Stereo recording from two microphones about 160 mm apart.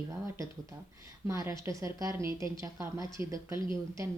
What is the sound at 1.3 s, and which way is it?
Speech, 20° right (ahead or behind).